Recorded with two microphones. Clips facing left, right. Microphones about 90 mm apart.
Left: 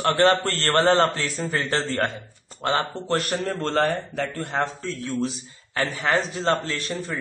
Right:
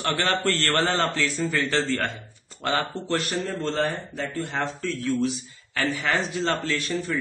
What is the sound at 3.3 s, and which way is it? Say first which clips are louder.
A man's voice: left 2 dB; 55° left (ahead or behind).